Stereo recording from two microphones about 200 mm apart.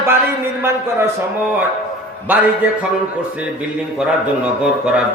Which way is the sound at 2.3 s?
10° right (ahead or behind).